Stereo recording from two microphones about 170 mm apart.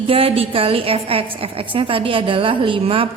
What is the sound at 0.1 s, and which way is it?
A woman's voice, 35° right (ahead or behind).